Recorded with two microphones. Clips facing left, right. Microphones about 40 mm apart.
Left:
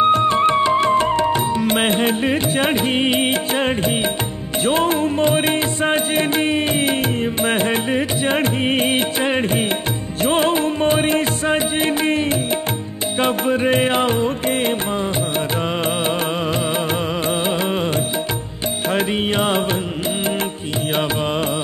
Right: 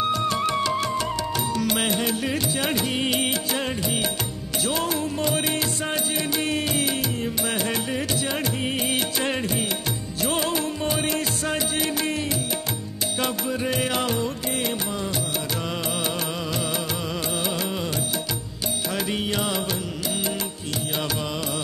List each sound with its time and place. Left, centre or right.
0.0 s music: left
18.9 s music: left